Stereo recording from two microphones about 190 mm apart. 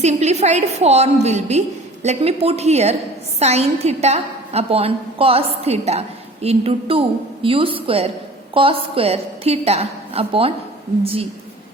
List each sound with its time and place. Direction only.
0.0 s a woman's voice: 35° right (ahead or behind)